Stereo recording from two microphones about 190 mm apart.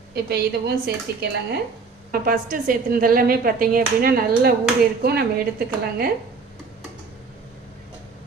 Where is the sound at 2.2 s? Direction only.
45° right (ahead or behind).